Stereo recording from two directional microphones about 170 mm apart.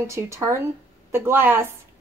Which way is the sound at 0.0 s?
15° right (ahead or behind).